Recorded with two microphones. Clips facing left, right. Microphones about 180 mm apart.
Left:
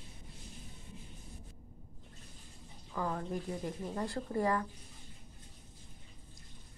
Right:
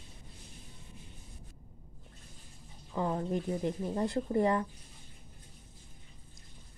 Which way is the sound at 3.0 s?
25° right (ahead or behind).